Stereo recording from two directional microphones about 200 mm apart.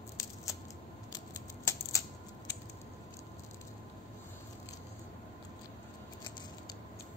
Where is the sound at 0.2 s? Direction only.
15° left (ahead or behind).